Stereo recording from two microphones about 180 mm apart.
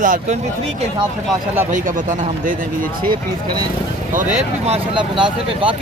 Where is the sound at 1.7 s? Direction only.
45° right (ahead or behind).